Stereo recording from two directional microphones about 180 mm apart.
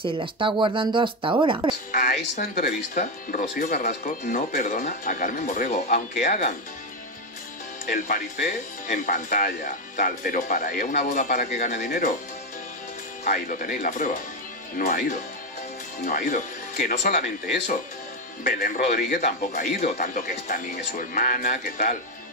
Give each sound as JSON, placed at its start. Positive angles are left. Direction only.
{"t": 0.0, "sound": "speech", "side_deg": -30}
{"t": 1.9, "sound": "a sound", "side_deg": 45}
{"t": 2.6, "sound": "speech", "side_deg": 50}
{"t": 7.8, "sound": "speech", "side_deg": 45}
{"t": 13.2, "sound": "speech", "side_deg": 45}
{"t": 18.4, "sound": "speech", "side_deg": 50}
{"t": 19.1, "sound": "speech", "side_deg": 45}